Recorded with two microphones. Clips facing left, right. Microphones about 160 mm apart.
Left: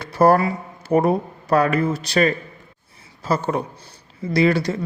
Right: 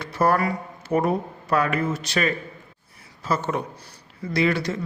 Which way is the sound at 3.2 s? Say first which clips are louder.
Left 3 dB; 35° left (ahead or behind).